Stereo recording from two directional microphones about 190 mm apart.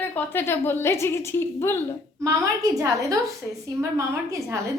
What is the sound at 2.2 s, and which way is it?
A woman's voice, 20° right (ahead or behind).